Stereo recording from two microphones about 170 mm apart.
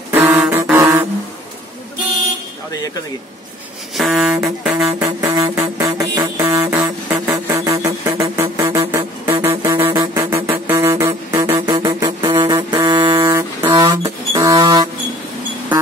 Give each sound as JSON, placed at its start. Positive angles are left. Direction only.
{"t": 0.1, "sound": "a sound", "side_deg": -10}
{"t": 3.9, "sound": "music", "side_deg": 0}
{"t": 5.0, "sound": "music", "side_deg": -20}
{"t": 6.3, "sound": "a sound", "side_deg": -20}
{"t": 9.5, "sound": "music", "side_deg": -25}
{"t": 9.9, "sound": "music", "side_deg": -15}